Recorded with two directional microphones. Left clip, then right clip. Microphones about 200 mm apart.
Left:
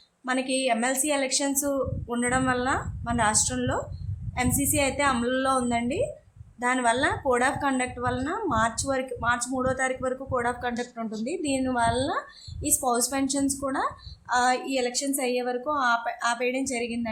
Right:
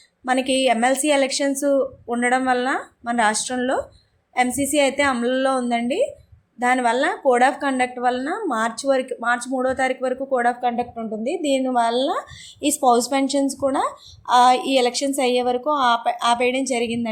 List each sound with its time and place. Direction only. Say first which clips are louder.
0.3 s a woman's voice: right 7 dB; 15° right (ahead or behind)